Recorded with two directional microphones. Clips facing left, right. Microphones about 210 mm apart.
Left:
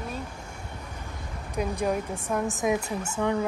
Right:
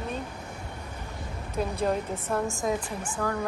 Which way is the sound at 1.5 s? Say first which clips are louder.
Even; 10° left (ahead or behind).